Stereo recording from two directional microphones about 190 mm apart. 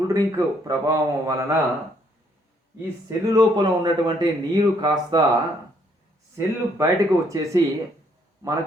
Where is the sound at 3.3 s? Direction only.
20° right (ahead or behind).